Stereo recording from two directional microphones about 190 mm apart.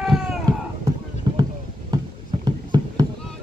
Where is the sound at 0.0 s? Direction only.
Centre (ahead or behind).